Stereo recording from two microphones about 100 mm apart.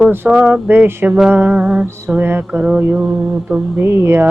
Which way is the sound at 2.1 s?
20° right (ahead or behind).